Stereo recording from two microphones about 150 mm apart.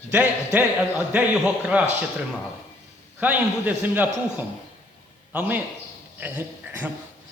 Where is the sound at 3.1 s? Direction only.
10° right (ahead or behind).